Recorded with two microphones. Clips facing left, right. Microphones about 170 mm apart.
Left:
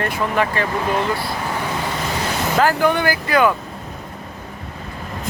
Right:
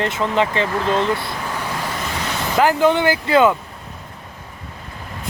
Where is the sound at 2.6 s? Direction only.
20° right (ahead or behind).